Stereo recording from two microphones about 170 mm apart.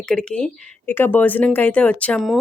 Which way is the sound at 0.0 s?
5° left (ahead or behind).